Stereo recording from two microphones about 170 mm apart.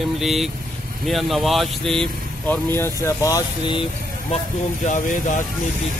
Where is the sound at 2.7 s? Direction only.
15° left (ahead or behind).